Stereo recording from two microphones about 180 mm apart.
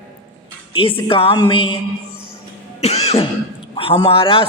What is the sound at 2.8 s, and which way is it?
Throat clearing, 35° left (ahead or behind).